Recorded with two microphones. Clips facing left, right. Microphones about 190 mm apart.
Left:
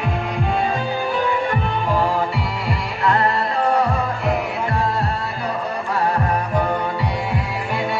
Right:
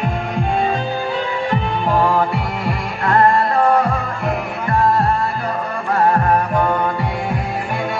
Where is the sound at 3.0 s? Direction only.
50° right (ahead or behind).